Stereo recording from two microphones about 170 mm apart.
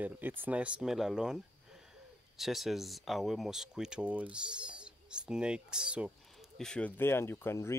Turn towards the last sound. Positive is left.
turn(degrees=15)  # may be behind; listen again after turning